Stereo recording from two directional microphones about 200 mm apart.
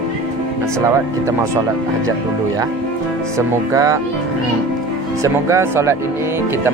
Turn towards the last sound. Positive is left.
turn(degrees=-15)  # may be behind; listen again after turning